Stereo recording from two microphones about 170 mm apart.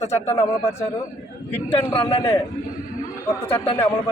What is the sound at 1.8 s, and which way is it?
Speech, 30° left (ahead or behind).